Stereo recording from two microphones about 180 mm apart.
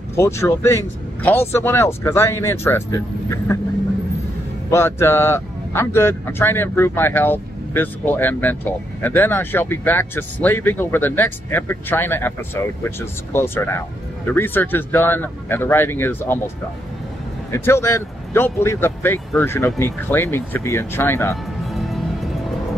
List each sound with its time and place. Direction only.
0.1 s a man's voice: 15° left (ahead or behind)
4.6 s a man's voice: 15° left (ahead or behind)
17.5 s a man's voice: 15° left (ahead or behind)
21.7 s music: centre (ahead or behind)